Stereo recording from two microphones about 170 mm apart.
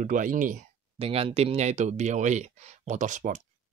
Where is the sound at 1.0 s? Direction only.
35° right (ahead or behind).